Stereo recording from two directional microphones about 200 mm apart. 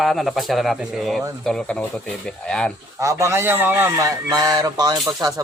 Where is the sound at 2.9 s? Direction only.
15° right (ahead or behind).